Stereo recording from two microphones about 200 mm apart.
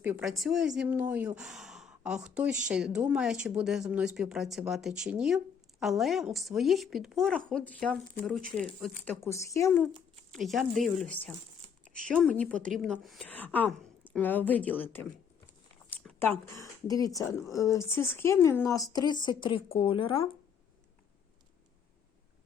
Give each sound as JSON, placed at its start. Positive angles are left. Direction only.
{"t": 0.0, "sound": "a woman's voice", "side_deg": -5}
{"t": 9.0, "sound": "speech", "side_deg": 15}
{"t": 10.3, "sound": "a woman's voice", "side_deg": 0}